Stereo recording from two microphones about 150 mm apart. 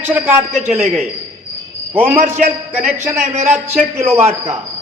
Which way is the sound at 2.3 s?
50° right (ahead or behind).